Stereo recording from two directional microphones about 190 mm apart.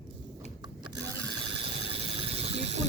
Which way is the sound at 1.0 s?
30° right (ahead or behind).